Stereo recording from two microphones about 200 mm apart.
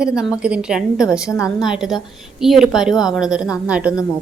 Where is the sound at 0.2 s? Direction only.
5° right (ahead or behind).